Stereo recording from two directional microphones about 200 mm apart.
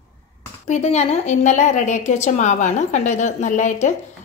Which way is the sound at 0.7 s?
35° left (ahead or behind).